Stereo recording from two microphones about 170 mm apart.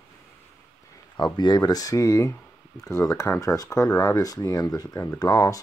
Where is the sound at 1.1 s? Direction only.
25° left (ahead or behind).